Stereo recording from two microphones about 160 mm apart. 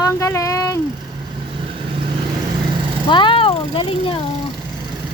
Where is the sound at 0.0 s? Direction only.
20° left (ahead or behind).